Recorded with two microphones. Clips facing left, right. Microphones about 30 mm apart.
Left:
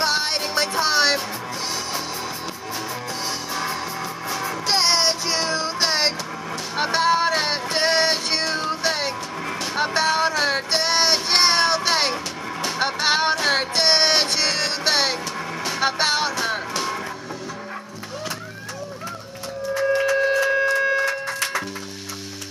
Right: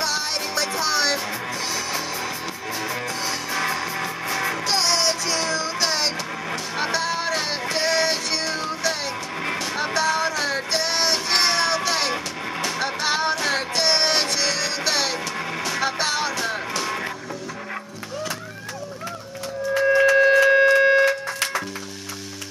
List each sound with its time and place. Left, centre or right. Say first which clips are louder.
0.0 s music: left 3 dB; left
4.6 s music: left 3 dB; left
9.8 s child singing: left 3 dB; left
12.8 s music: left 4 dB; left
20.1 s music: right 4 dB; right
20.5 s music: right 5 dB; right